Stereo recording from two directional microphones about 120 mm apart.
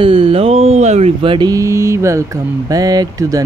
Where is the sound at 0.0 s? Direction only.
50° right (ahead or behind).